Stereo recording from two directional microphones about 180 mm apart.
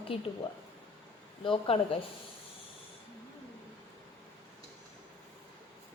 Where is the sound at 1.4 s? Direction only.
30° left (ahead or behind).